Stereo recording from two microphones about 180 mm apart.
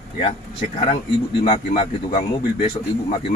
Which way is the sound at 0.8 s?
35° left (ahead or behind).